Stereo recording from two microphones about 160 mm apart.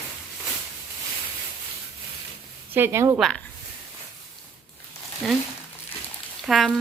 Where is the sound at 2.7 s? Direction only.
15° right (ahead or behind).